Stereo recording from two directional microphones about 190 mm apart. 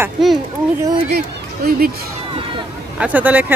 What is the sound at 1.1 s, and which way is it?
Speech, 50° right (ahead or behind).